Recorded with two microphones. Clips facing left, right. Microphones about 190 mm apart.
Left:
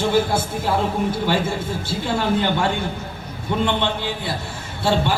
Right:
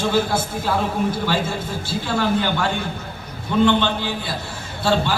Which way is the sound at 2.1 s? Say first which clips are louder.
Even; 25° left (ahead or behind).